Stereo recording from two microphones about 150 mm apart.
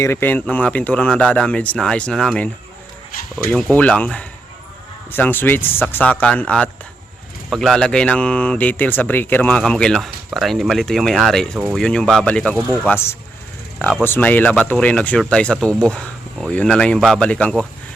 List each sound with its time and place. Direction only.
0.0 s speech: 15° left (ahead or behind)